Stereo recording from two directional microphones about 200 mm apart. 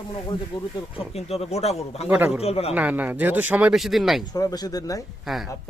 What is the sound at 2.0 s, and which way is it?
Speech, 10° right (ahead or behind).